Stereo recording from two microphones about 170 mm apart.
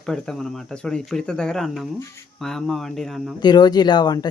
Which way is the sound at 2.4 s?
Centre (ahead or behind).